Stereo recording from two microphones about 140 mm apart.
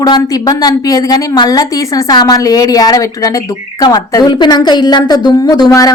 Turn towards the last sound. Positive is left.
turn(degrees=25)  # may be behind; listen again after turning